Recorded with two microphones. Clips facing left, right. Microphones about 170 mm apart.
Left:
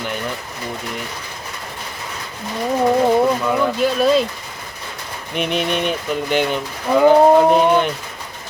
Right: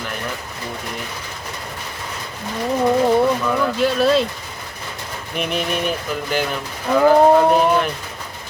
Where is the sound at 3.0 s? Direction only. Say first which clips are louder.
Left 1 dB; 10° left (ahead or behind).